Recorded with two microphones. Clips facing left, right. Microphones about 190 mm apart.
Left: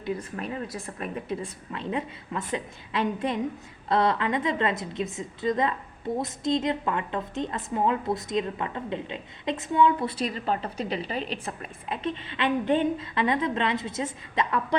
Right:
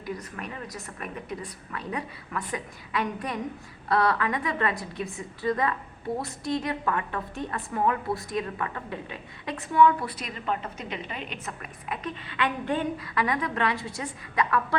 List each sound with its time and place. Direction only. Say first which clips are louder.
0.0 s a woman's voice: left 4 dB; 30° left (ahead or behind)